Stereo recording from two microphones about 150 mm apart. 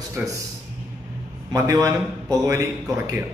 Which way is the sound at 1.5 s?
20° right (ahead or behind).